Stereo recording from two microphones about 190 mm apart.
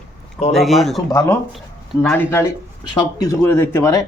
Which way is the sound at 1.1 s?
20° left (ahead or behind).